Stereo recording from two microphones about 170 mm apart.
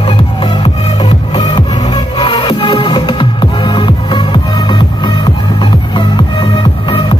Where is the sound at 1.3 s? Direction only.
25° left (ahead or behind).